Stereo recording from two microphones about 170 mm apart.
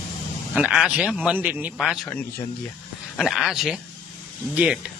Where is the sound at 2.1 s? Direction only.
10° left (ahead or behind).